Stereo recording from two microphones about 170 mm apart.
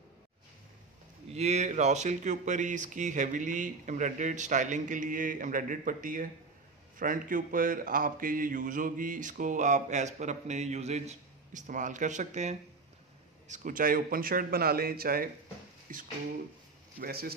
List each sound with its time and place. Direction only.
1.3 s a man's voice: 40° right (ahead or behind)
17.0 s a man's voice: 65° right (ahead or behind)